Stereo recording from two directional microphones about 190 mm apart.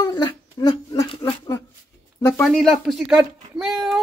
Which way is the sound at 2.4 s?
Centre (ahead or behind).